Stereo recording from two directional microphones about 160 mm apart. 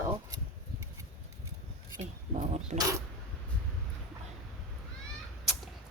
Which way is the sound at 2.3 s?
45° right (ahead or behind).